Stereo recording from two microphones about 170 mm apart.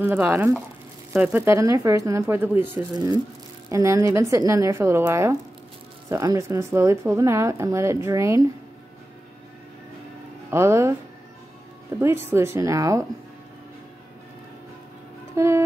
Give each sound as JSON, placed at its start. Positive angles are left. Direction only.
{"t": 0.0, "sound": "a woman's voice", "side_deg": -10}
{"t": 3.7, "sound": "a woman's voice", "side_deg": -20}
{"t": 10.5, "sound": "a woman's voice", "side_deg": -15}
{"t": 12.0, "sound": "a woman's voice", "side_deg": -15}
{"t": 15.3, "sound": "music", "side_deg": -15}